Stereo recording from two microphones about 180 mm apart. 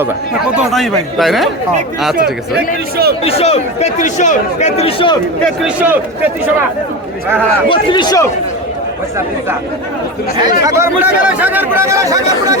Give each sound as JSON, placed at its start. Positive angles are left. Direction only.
{"t": 0.5, "sound": "a man's voice", "side_deg": 0}
{"t": 2.1, "sound": "a man's voice", "side_deg": -60}
{"t": 3.2, "sound": "speech", "side_deg": 35}
{"t": 5.6, "sound": "speech", "side_deg": -10}
{"t": 7.7, "sound": "speech", "side_deg": 25}
{"t": 10.6, "sound": "speech", "side_deg": -15}